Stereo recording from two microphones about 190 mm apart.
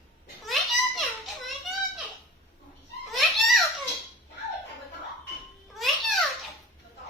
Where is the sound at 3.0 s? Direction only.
Centre (ahead or behind).